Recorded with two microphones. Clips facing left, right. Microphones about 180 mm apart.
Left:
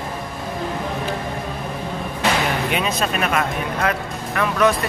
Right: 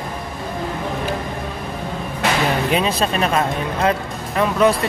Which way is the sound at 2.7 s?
30° right (ahead or behind).